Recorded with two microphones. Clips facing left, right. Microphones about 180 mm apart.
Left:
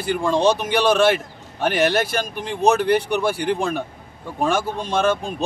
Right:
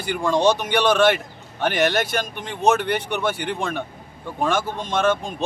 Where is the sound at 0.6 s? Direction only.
5° left (ahead or behind).